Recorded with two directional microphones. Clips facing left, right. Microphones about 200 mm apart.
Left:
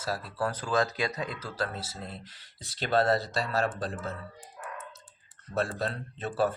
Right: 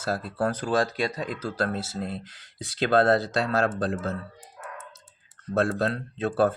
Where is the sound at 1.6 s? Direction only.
70° right (ahead or behind).